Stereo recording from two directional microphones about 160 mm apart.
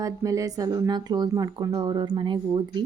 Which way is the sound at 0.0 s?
20° right (ahead or behind).